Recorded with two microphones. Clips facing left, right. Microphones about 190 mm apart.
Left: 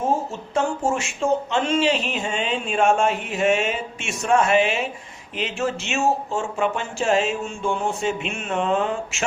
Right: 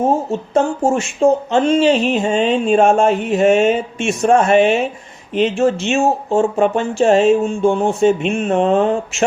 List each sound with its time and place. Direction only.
0.5 s speech: 40° right (ahead or behind)